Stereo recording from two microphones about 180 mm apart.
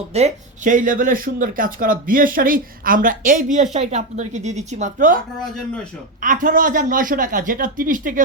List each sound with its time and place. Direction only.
0.1 s speech: 35° right (ahead or behind)
6.2 s speech: 45° right (ahead or behind)